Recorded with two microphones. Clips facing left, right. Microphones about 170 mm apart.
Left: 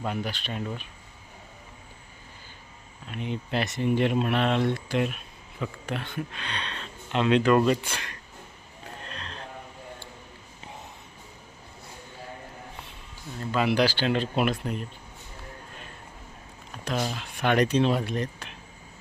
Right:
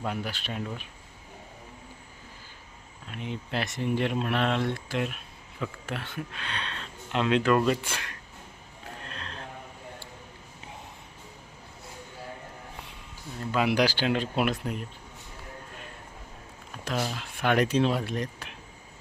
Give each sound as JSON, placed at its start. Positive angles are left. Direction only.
{"t": 0.0, "sound": "speech", "side_deg": 0}
{"t": 3.1, "sound": "speech", "side_deg": 0}
{"t": 9.0, "sound": "a sound", "side_deg": -5}
{"t": 13.5, "sound": "speech", "side_deg": -10}
{"t": 16.8, "sound": "speech", "side_deg": -5}